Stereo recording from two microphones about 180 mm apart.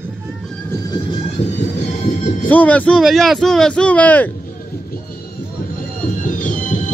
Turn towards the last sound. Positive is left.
turn(degrees=45)  # may be behind; listen again after turning